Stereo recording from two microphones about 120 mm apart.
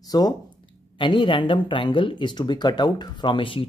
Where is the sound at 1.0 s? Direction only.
45° left (ahead or behind).